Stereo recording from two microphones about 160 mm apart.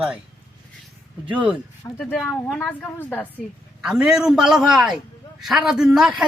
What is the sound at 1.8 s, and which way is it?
A man's voice, 5° left (ahead or behind).